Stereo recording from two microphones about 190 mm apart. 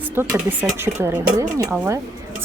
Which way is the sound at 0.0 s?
10° right (ahead or behind).